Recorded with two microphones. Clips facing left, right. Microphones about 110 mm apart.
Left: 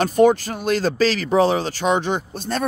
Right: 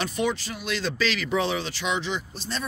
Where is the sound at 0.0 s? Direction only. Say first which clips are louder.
Left 12 dB; 45° left (ahead or behind).